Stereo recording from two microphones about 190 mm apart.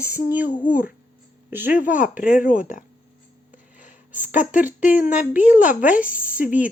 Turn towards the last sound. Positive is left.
turn(degrees=-5)  # may be behind; listen again after turning